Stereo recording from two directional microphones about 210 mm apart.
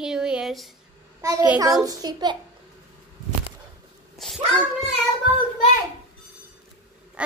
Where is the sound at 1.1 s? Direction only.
10° right (ahead or behind).